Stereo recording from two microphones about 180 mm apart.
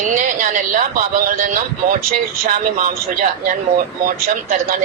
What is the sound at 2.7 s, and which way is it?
A man's voice, 50° right (ahead or behind).